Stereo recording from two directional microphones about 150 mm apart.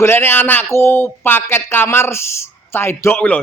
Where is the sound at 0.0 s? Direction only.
15° left (ahead or behind).